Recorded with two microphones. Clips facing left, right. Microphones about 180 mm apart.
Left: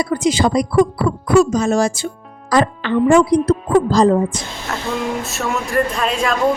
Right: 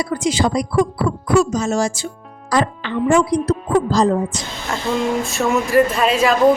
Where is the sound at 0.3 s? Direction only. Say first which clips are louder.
Left 2 dB; 55° left (ahead or behind).